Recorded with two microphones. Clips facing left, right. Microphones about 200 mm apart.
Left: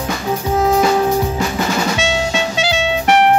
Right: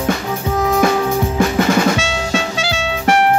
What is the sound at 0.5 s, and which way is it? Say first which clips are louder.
Music: left 2 dB; 25° left (ahead or behind).